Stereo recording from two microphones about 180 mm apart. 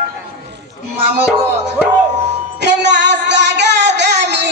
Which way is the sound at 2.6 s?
70° right (ahead or behind).